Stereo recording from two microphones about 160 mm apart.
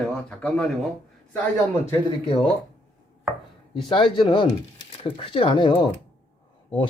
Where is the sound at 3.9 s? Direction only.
30° left (ahead or behind).